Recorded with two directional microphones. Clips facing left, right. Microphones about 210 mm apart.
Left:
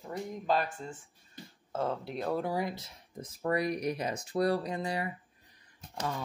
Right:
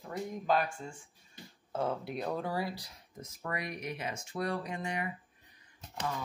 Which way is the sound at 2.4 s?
15° left (ahead or behind).